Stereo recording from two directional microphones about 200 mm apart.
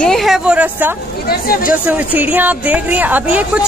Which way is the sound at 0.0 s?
Centre (ahead or behind).